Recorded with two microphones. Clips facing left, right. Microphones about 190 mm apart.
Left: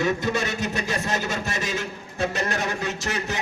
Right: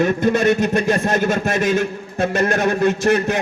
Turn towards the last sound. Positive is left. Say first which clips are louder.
# right 12 dB
turn(degrees=-55)  # may be behind; listen again after turning